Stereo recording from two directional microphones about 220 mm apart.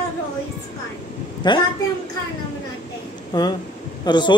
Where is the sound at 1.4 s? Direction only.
20° left (ahead or behind).